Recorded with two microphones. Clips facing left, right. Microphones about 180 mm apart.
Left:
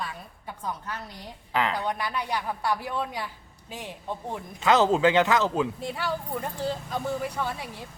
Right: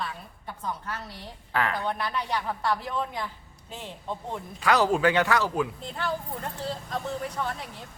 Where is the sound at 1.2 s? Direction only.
15° left (ahead or behind).